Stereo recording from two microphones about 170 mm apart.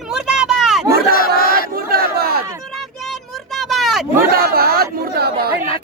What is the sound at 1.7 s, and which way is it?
Battle cry, 65° right (ahead or behind).